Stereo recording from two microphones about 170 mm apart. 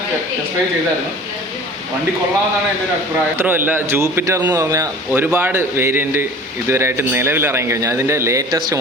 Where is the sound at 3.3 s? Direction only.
10° right (ahead or behind).